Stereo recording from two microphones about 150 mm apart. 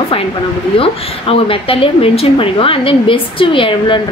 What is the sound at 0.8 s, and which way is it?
A woman's voice, 40° left (ahead or behind).